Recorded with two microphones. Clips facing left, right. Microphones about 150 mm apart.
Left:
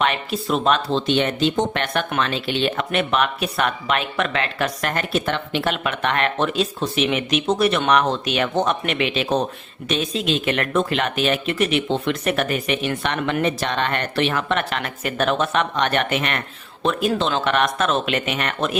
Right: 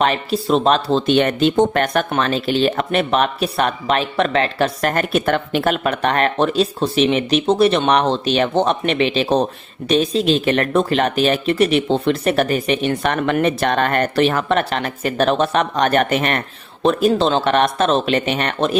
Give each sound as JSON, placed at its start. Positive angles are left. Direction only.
{"t": 0.0, "sound": "speech", "side_deg": -35}